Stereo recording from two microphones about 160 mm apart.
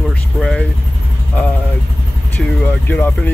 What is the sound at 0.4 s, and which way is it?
Vehicle, 5° left (ahead or behind).